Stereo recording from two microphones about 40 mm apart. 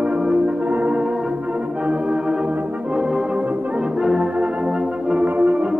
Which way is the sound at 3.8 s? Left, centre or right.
Right.